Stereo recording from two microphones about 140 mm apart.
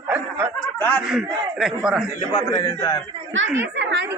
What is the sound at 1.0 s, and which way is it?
A man's voice, 5° right (ahead or behind).